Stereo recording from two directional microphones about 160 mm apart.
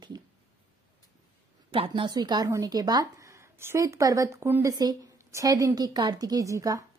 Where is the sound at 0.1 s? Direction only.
25° right (ahead or behind).